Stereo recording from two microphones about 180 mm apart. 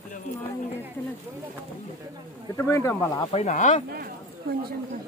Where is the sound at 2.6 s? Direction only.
15° left (ahead or behind).